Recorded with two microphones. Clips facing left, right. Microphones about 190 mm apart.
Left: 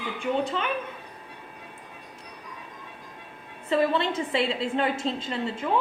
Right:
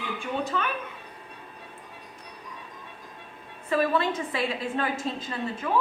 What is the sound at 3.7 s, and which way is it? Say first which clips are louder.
A woman's voice: left 1 dB; 25° left (ahead or behind).